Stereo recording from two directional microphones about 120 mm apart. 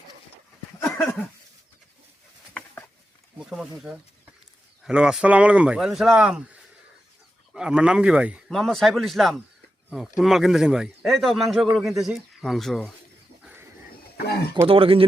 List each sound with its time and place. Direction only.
0.8 s a sound: 20° left (ahead or behind)
2.5 s a sound: 10° left (ahead or behind)
3.4 s speech: 5° right (ahead or behind)
4.8 s speech: 5° right (ahead or behind)
8.4 s a man's voice: centre (ahead or behind)
13.4 s bird: 15° right (ahead or behind)
14.7 s speech: 50° right (ahead or behind)